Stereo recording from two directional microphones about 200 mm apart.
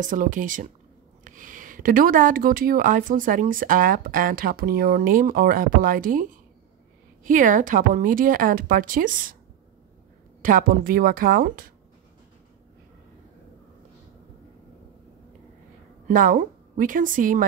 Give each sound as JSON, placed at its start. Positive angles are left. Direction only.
{"t": 0.0, "sound": "speech", "side_deg": -40}
{"t": 10.4, "sound": "speech", "side_deg": -45}
{"t": 16.1, "sound": "a woman's voice", "side_deg": -45}